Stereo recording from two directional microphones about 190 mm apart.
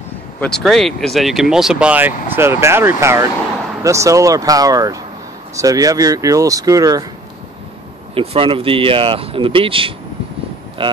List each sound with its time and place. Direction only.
0.4 s speech: 5° left (ahead or behind); by 7.1 s 20° right (ahead or behind)
8.1 s speech: 30° right (ahead or behind)